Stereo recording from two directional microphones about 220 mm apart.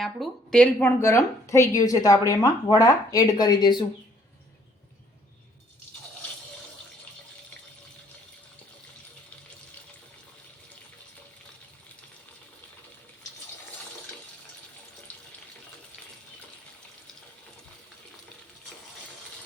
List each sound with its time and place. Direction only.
0.0 s a woman's voice: centre (ahead or behind); by 3.8 s 20° left (ahead or behind)